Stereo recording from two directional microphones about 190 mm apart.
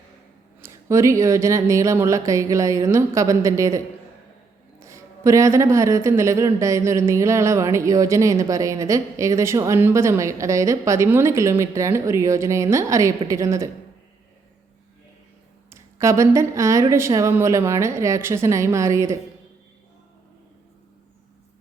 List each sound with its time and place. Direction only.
0.6 s speech: 15° right (ahead or behind)
15.7 s speech: 15° right (ahead or behind)